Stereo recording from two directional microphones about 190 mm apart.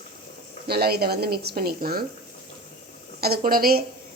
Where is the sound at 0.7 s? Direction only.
55° right (ahead or behind).